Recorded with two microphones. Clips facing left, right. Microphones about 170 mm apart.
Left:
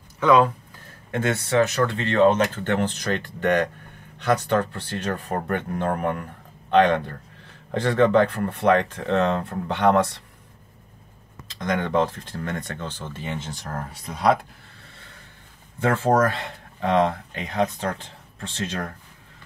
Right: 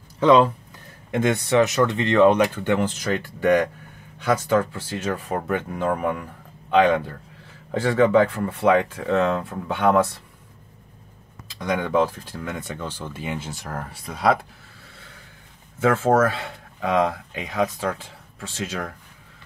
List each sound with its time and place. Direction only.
0.2 s speech: 25° right (ahead or behind); by 10.2 s 5° right (ahead or behind)
11.6 s speech: 5° right (ahead or behind)
15.8 s speech: 5° right (ahead or behind)